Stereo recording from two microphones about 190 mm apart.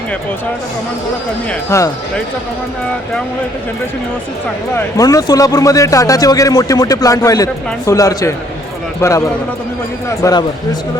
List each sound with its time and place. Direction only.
1.7 s a man's voice: 15° left (ahead or behind)
4.7 s a man's voice: 15° left (ahead or behind)